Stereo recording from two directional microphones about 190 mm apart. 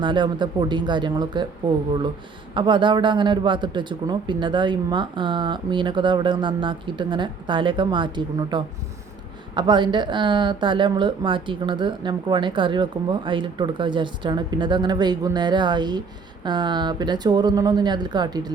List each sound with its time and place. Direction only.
0.0 s speech: 25° right (ahead or behind)